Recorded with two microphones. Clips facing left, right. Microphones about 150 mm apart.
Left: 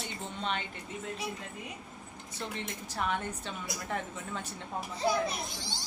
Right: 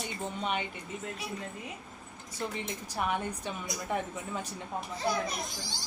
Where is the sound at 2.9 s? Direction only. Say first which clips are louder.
Right 1 dB; 10° right (ahead or behind).